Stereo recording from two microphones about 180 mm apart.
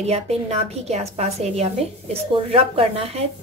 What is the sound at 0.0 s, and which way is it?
A woman's voice, 35° right (ahead or behind).